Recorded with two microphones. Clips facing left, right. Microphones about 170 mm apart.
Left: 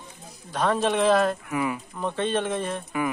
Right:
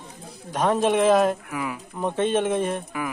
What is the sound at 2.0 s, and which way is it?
Speech, 15° right (ahead or behind).